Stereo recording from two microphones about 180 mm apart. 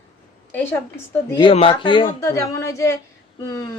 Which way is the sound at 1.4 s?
30° left (ahead or behind).